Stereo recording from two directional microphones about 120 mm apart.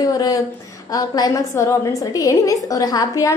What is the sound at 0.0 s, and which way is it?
A woman's voice, 30° left (ahead or behind).